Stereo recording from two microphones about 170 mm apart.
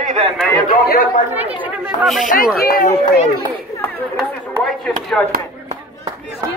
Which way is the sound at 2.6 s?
60° left (ahead or behind).